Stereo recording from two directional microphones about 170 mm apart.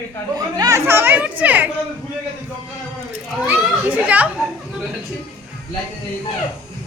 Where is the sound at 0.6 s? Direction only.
20° right (ahead or behind).